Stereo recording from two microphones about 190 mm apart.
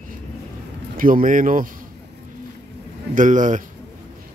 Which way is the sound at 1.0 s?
45° right (ahead or behind).